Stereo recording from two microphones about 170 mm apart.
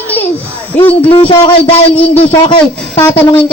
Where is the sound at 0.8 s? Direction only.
10° left (ahead or behind).